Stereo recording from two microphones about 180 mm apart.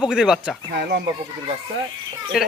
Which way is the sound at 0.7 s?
65° right (ahead or behind).